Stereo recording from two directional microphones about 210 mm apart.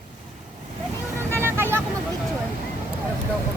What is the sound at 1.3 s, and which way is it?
Vehicle, 10° right (ahead or behind).